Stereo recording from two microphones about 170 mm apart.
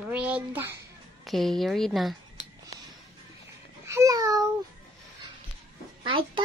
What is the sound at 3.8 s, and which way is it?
Speech, 20° right (ahead or behind).